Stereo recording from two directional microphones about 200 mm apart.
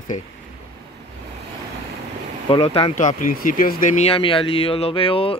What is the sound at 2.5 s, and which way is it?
Speech, 25° left (ahead or behind).